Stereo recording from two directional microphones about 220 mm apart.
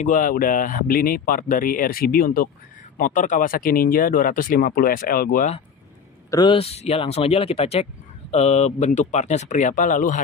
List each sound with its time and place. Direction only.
0.0 s speech: 35° left (ahead or behind)
6.3 s speech: 20° left (ahead or behind)